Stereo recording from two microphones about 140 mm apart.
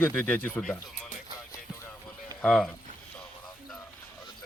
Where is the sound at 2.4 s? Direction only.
5° left (ahead or behind).